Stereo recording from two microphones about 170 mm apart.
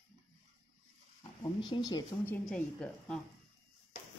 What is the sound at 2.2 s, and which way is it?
A woman's voice, 10° left (ahead or behind).